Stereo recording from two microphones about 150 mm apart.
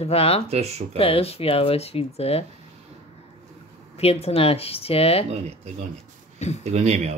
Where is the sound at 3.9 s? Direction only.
40° left (ahead or behind).